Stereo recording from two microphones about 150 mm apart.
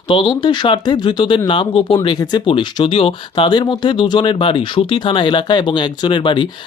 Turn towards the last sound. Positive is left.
turn(degrees=35)  # may be behind; listen again after turning